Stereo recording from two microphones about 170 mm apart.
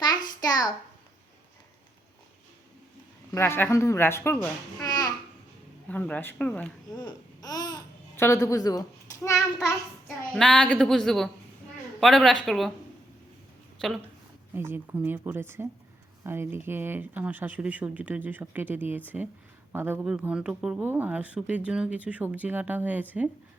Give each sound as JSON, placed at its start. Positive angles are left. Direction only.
{"t": 0.0, "sound": "a sound", "side_deg": 25}
{"t": 3.3, "sound": "speech", "side_deg": 15}
{"t": 4.8, "sound": "a sound", "side_deg": 20}
{"t": 5.9, "sound": "speech", "side_deg": 10}
{"t": 7.0, "sound": "speech", "side_deg": 20}
{"t": 9.3, "sound": "a woman's voice", "side_deg": 0}
{"t": 13.7, "sound": "speech", "side_deg": 0}
{"t": 14.5, "sound": "speech", "side_deg": -15}